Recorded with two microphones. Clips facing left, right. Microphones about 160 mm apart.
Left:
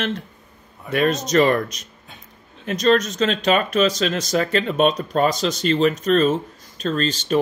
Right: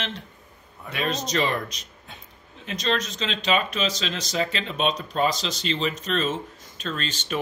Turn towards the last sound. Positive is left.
turn(degrees=35)  # may be behind; listen again after turning